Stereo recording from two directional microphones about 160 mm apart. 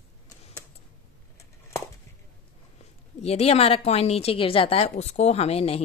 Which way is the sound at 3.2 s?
40° left (ahead or behind).